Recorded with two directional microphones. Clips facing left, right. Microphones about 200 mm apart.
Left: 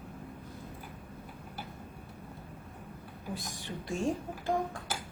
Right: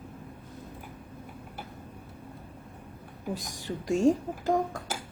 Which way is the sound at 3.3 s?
40° right (ahead or behind).